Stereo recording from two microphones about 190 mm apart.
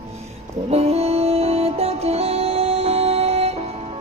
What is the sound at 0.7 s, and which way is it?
Music, 35° right (ahead or behind).